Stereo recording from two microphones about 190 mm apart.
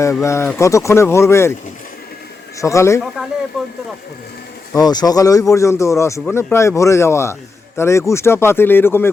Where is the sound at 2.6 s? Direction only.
15° left (ahead or behind).